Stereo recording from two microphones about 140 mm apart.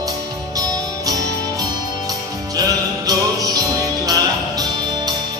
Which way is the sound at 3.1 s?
25° right (ahead or behind).